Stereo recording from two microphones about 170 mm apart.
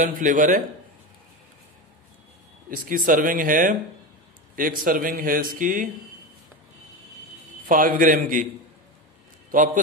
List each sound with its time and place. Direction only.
0.0 s speech: 50° right (ahead or behind)
2.7 s speech: 55° right (ahead or behind)
7.6 s speech: 55° right (ahead or behind)
9.5 s speech: 55° right (ahead or behind)